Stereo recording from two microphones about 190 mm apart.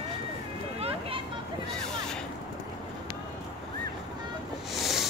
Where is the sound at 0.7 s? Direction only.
30° right (ahead or behind).